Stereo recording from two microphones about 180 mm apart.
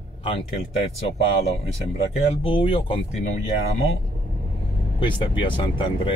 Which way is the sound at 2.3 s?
30° left (ahead or behind).